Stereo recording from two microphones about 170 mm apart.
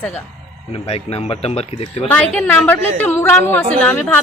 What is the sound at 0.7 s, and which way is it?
Speech, 35° left (ahead or behind).